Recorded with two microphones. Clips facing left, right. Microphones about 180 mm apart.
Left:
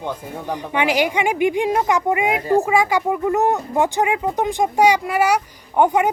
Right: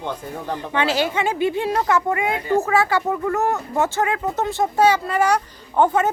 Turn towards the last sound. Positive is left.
turn(degrees=15)  # may be behind; listen again after turning